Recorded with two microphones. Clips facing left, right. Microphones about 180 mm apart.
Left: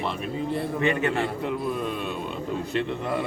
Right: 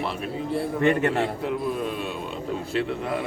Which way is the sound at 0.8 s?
50° right (ahead or behind).